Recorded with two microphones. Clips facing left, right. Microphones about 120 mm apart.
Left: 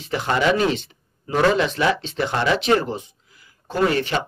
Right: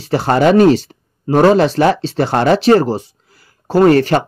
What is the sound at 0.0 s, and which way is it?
Speech, 35° right (ahead or behind).